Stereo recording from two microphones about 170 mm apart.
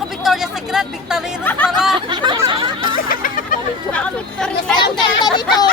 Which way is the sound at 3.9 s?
5° left (ahead or behind).